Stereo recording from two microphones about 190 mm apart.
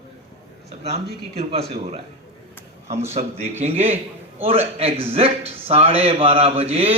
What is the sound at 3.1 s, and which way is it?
A man's voice, 35° right (ahead or behind).